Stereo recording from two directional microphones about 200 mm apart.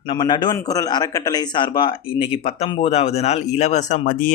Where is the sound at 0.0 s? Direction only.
25° left (ahead or behind).